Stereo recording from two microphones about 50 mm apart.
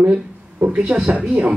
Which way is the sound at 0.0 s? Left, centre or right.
Right.